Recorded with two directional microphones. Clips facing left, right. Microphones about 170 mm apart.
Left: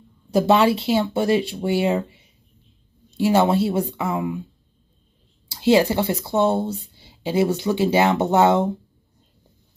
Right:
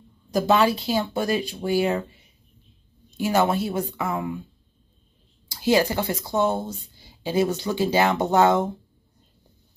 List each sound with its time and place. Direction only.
0.3 s speech: 30° left (ahead or behind)
3.1 s speech: 30° left (ahead or behind)
4.0 s speech: 10° left (ahead or behind)
5.5 s speech: 25° left (ahead or behind)